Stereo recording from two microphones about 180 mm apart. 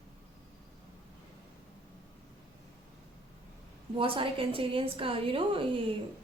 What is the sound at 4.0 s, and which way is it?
A woman's voice, 30° right (ahead or behind).